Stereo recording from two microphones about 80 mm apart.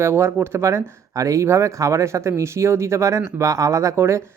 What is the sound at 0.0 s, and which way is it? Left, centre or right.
Speech, right.